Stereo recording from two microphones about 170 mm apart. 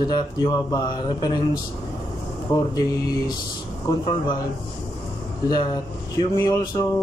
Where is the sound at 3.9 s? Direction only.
25° left (ahead or behind).